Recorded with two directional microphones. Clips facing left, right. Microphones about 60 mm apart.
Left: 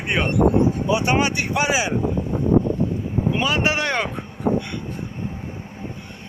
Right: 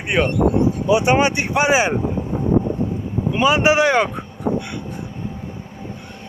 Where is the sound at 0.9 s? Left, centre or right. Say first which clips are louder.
Right 7 dB; right.